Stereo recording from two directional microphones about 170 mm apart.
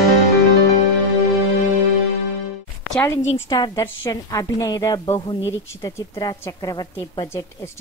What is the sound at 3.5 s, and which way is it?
A woman's voice, 25° left (ahead or behind).